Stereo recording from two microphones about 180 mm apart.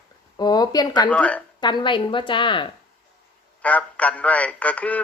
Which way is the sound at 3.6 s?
5° left (ahead or behind).